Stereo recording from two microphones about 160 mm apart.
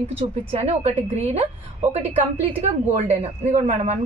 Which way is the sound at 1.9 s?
40° right (ahead or behind).